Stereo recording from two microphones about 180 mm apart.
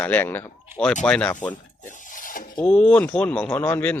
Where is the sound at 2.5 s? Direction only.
5° left (ahead or behind).